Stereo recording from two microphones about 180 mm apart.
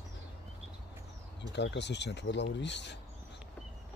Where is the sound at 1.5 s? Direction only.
75° left (ahead or behind).